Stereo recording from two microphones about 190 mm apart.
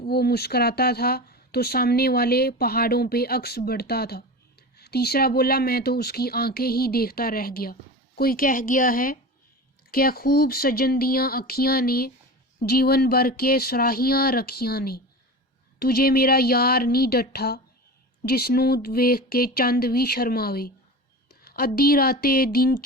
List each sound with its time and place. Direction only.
0.0 s speech: 55° left (ahead or behind)
21.4 s a sound: 55° left (ahead or behind)
21.8 s speech: 50° left (ahead or behind)